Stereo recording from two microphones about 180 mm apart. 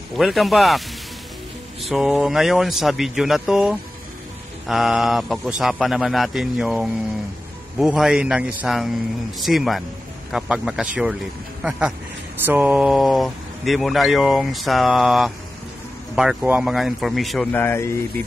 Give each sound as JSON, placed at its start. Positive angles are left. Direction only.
{"t": 0.1, "sound": "speech", "side_deg": 0}
{"t": 12.4, "sound": "speech", "side_deg": -10}